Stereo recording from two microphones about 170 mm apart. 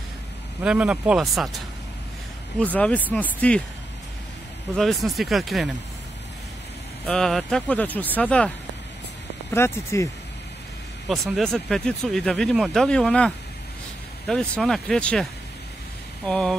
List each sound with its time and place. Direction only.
0.6 s speech: 5° right (ahead or behind)
2.6 s speech: 10° left (ahead or behind)
4.7 s speech: centre (ahead or behind)
7.1 s speech: 5° left (ahead or behind)
9.5 s speech: 15° left (ahead or behind)
11.1 s speech: centre (ahead or behind)
16.3 s speech: 5° left (ahead or behind)